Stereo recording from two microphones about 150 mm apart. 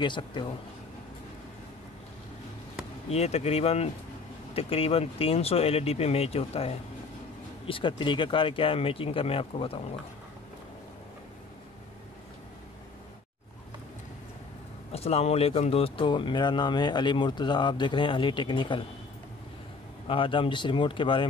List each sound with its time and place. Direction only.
0.0 s speech: 30° left (ahead or behind)
3.1 s speech: 45° left (ahead or behind)
14.9 s speech: 45° left (ahead or behind)
20.1 s speech: 35° left (ahead or behind)